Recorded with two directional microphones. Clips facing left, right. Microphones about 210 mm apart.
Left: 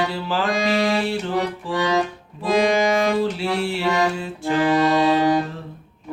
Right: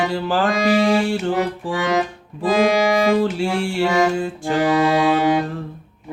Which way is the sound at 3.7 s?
50° right (ahead or behind).